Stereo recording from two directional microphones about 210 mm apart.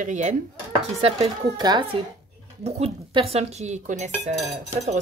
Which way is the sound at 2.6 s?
30° right (ahead or behind).